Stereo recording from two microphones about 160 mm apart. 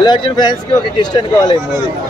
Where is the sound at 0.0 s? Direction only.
25° left (ahead or behind).